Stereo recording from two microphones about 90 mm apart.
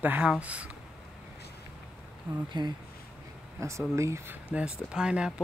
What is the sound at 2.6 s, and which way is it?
Speech, 55° right (ahead or behind).